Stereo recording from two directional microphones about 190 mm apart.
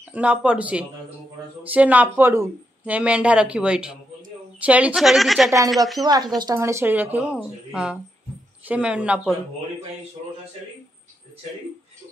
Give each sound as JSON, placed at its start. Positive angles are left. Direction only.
{"t": 0.1, "sound": "a woman's voice", "side_deg": -5}
{"t": 6.0, "sound": "a woman's voice", "side_deg": -20}